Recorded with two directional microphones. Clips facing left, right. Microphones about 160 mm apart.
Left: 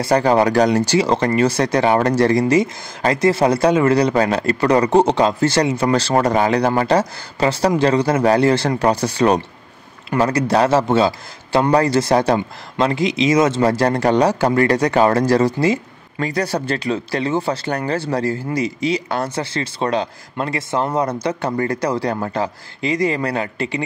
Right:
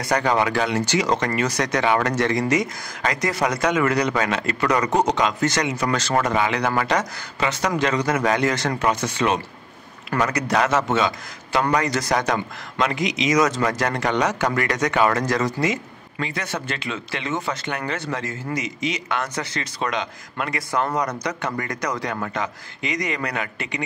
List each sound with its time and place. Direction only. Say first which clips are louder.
0.0 s a man's voice: left 6 dB; 30° left (ahead or behind)